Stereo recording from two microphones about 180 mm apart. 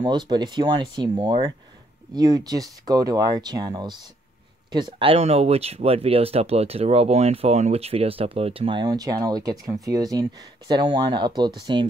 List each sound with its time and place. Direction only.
0.0 s speech: 25° right (ahead or behind)